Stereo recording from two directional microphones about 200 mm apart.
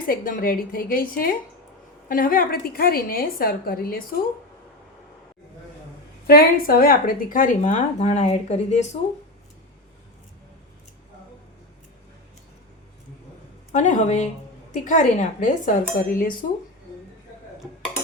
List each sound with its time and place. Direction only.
0.1 s a woman's voice: 45° left (ahead or behind)
6.2 s speech: 50° left (ahead or behind); by 9.0 s 35° left (ahead or behind)
13.7 s speech: 35° left (ahead or behind)